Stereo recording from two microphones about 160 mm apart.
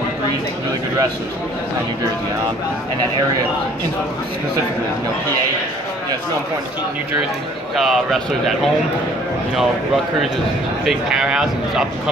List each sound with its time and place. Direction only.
7.7 s speech: centre (ahead or behind)
10.9 s speech: 5° right (ahead or behind)